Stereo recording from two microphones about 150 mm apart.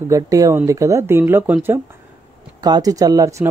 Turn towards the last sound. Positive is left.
turn(degrees=-20)  # may be behind; listen again after turning